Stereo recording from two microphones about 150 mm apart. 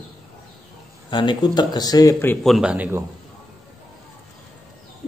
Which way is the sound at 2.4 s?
5° right (ahead or behind).